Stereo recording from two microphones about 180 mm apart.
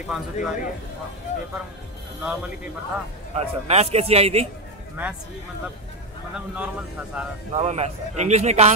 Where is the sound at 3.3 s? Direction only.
35° right (ahead or behind).